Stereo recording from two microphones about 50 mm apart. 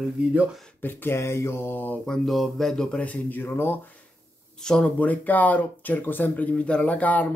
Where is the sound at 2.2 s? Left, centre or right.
Centre.